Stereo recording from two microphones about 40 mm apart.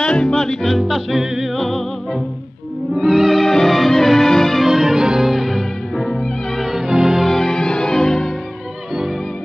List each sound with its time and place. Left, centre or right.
0.0 s music: left
0.3 s music: centre
0.7 s music: centre
4.6 s music: centre
5.3 s music: centre
6.7 s music: centre
7.2 s music: centre